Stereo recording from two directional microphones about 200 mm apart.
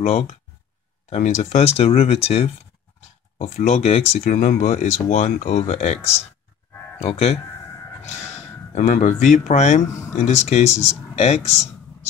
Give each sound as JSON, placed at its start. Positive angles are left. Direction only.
{"t": 0.0, "sound": "speech", "side_deg": 35}
{"t": 8.7, "sound": "speech", "side_deg": 35}